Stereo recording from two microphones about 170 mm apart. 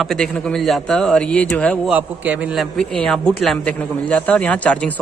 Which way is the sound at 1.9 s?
10° right (ahead or behind).